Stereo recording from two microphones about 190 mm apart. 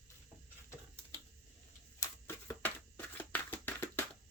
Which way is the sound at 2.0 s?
15° left (ahead or behind).